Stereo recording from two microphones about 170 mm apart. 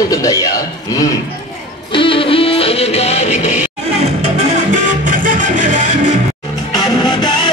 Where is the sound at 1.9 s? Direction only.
30° left (ahead or behind).